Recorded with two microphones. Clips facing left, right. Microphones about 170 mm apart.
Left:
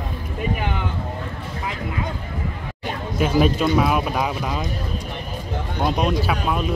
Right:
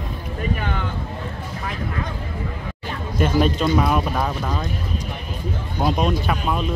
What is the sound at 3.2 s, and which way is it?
Speech, 5° left (ahead or behind).